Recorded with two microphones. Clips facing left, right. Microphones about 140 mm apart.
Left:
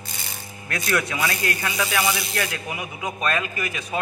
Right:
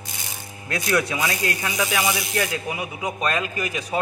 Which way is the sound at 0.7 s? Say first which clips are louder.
Right 2 dB; 10° right (ahead or behind).